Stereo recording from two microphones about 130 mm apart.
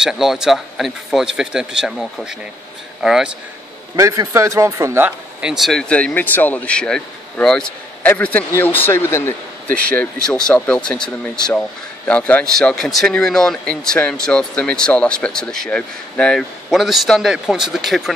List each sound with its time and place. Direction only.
0.0 s speech: centre (ahead or behind)
3.9 s speech: 25° right (ahead or behind)
5.4 s speech: 5° right (ahead or behind)